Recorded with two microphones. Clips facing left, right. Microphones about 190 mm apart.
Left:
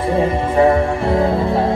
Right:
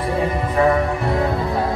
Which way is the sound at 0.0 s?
30° left (ahead or behind).